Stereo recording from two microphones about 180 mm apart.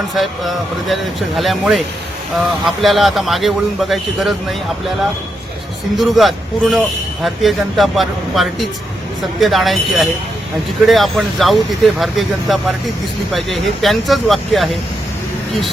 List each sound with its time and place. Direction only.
0.1 s a man's voice: centre (ahead or behind)